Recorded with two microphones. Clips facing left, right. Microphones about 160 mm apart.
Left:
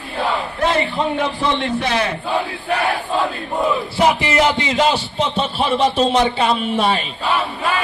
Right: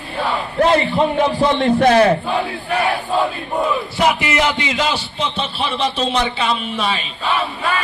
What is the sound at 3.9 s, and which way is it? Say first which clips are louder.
A man's voice: left 2 dB; 35° left (ahead or behind).